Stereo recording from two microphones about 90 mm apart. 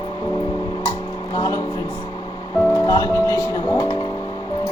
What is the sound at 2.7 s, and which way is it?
Speech, 35° left (ahead or behind).